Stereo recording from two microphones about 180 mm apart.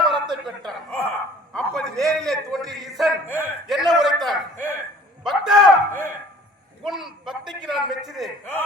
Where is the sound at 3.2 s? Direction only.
15° left (ahead or behind).